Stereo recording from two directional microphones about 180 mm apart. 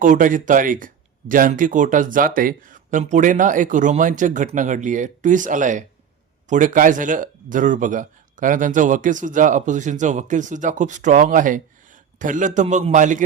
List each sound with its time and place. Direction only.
0.0 s speech: 45° right (ahead or behind)